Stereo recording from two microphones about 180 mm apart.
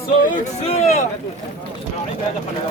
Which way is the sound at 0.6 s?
40° left (ahead or behind).